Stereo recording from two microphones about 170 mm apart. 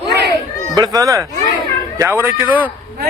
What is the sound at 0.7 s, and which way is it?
A man's voice, 25° right (ahead or behind).